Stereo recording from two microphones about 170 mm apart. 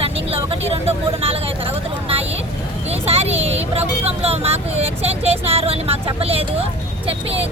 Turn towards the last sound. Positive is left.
turn(degrees=-35)  # may be behind; listen again after turning